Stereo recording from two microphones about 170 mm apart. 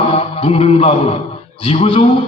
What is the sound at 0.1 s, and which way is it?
Mantra, 35° left (ahead or behind).